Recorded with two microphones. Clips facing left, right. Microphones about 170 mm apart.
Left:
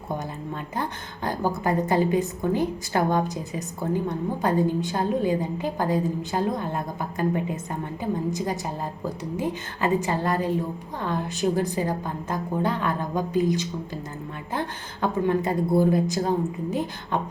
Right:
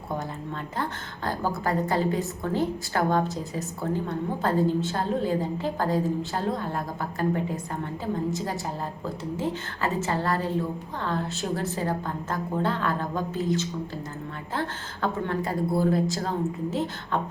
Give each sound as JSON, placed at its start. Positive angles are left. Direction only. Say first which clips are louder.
{"t": 0.8, "sound": "a woman's voice", "louder": "left 1 dB", "side_deg": 20}
{"t": 9.0, "sound": "a woman's voice", "louder": "left 1 dB", "side_deg": 15}